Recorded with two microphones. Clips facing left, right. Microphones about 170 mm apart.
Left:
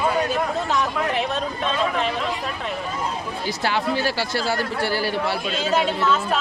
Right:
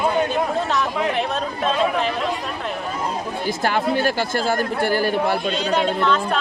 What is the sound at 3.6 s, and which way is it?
Speech, 50° right (ahead or behind).